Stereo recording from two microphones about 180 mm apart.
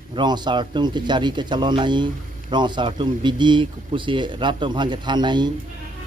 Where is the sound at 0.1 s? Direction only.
25° right (ahead or behind).